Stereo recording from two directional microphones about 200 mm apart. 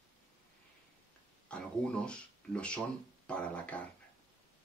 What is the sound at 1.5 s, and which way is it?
Speech, 5° left (ahead or behind).